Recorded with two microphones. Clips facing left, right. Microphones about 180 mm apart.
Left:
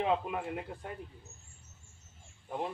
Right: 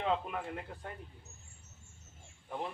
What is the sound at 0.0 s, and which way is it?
Speech, 15° left (ahead or behind).